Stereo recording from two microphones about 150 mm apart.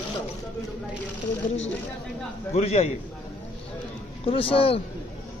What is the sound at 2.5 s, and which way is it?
Speech, 45° left (ahead or behind).